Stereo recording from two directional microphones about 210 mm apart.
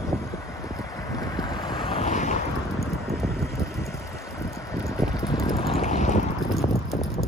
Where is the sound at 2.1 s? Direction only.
35° left (ahead or behind).